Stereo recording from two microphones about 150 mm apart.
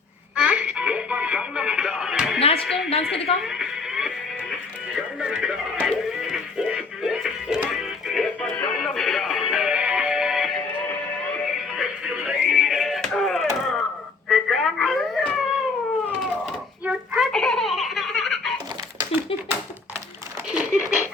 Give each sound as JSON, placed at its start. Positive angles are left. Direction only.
{"t": 0.3, "sound": "music", "side_deg": -10}
{"t": 2.6, "sound": "a woman's voice", "side_deg": 0}
{"t": 2.9, "sound": "a woman's voice", "side_deg": 40}
{"t": 3.4, "sound": "music", "side_deg": -5}
{"t": 11.7, "sound": "music", "side_deg": -5}
{"t": 14.3, "sound": "telephone", "side_deg": 0}
{"t": 16.5, "sound": "a sound", "side_deg": -5}
{"t": 20.5, "sound": "a sound", "side_deg": -10}